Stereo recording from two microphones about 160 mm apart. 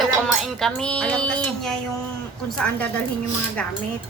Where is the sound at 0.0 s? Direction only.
Centre (ahead or behind).